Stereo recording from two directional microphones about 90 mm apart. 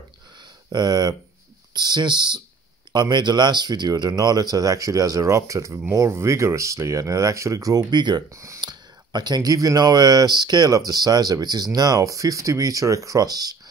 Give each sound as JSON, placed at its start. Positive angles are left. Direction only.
{"t": 0.7, "sound": "speech", "side_deg": -50}